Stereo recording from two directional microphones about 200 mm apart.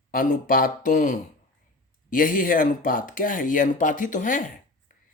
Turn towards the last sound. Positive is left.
turn(degrees=40)  # may be behind; listen again after turning